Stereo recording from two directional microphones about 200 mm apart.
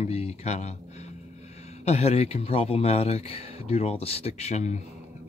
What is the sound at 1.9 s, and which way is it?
A man's voice, 30° left (ahead or behind).